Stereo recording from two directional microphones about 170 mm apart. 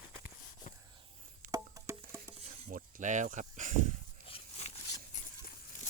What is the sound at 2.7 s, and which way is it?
Speech, 50° right (ahead or behind).